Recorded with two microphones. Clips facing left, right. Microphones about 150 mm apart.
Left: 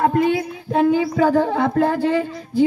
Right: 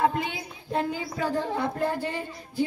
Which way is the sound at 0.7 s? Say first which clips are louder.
Left 11 dB; 85° left.